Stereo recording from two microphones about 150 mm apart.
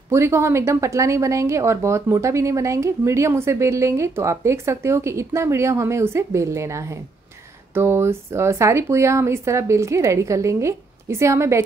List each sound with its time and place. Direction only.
0.1 s speech: 20° right (ahead or behind)